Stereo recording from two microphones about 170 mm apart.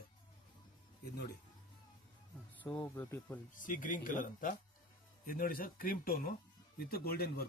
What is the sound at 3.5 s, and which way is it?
Speech, 50° left (ahead or behind).